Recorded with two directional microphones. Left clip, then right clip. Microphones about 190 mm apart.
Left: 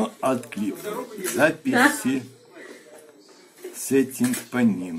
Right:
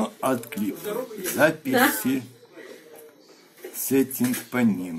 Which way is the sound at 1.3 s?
10° right (ahead or behind).